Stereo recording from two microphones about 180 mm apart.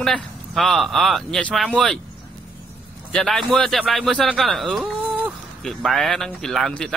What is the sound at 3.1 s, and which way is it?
Speech, centre (ahead or behind).